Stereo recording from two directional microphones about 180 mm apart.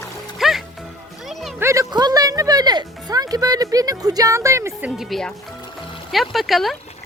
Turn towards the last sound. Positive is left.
turn(degrees=0)  # may be behind; listen again after turning